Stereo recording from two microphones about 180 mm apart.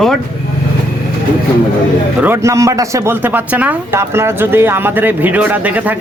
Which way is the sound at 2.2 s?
15° right (ahead or behind).